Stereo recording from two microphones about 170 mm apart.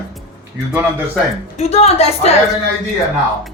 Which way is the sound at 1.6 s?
40° left (ahead or behind).